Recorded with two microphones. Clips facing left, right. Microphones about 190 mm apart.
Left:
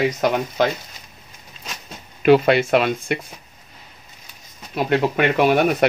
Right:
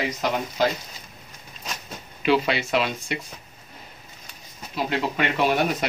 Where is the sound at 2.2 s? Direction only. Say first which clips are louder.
Left 8 dB; 50° left (ahead or behind).